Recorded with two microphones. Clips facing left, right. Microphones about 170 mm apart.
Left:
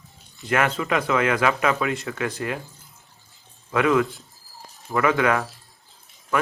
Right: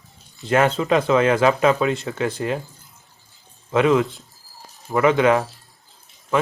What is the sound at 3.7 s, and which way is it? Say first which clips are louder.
Speech: right 3 dB; 25° right (ahead or behind).